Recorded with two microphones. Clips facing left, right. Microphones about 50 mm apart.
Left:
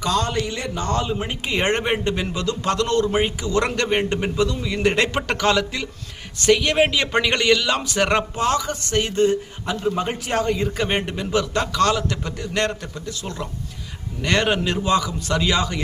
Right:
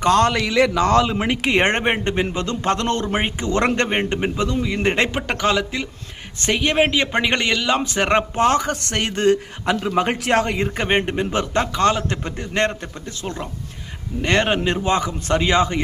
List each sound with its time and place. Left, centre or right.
0.0 s a man's voice: right
0.3 s a man's voice: right
8.4 s a man's voice: right